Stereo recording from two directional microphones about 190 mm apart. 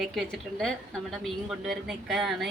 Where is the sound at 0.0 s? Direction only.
Centre (ahead or behind).